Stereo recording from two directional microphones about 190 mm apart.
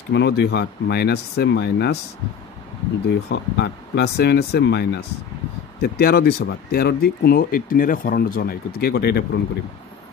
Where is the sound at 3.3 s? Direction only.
65° left (ahead or behind).